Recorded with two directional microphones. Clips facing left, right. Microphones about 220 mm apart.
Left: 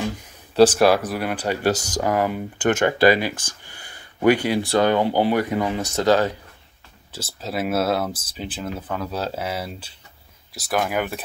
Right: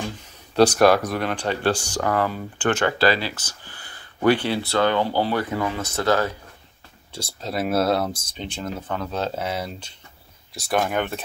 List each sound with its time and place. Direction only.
0.6 s speech: 5° left (ahead or behind)
1.7 s speech: 40° left (ahead or behind)
2.0 s speech: 15° left (ahead or behind)
7.1 s speech: 5° left (ahead or behind)